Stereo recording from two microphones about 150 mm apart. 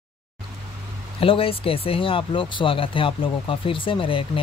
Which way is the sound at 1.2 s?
40° left (ahead or behind).